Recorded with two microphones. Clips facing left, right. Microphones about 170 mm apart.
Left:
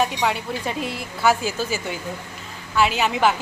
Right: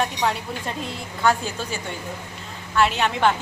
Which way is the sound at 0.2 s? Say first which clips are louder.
Left 1 dB; 5° left (ahead or behind).